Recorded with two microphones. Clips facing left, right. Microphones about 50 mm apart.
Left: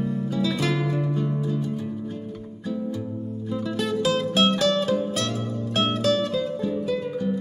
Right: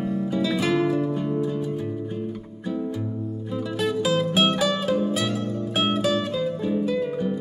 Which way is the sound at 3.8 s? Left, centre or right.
Centre.